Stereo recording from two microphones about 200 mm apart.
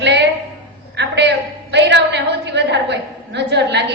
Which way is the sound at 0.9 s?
60° right (ahead or behind).